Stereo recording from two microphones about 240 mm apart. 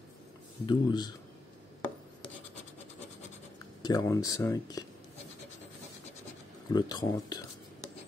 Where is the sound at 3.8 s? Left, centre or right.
Centre.